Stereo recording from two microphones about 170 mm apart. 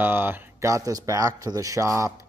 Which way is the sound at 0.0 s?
10° right (ahead or behind).